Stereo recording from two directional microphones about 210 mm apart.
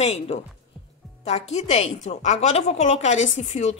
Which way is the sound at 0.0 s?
30° left (ahead or behind).